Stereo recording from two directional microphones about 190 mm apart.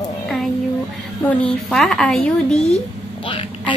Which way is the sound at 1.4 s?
5° left (ahead or behind).